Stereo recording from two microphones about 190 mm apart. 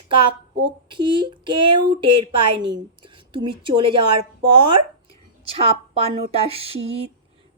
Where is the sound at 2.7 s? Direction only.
25° right (ahead or behind).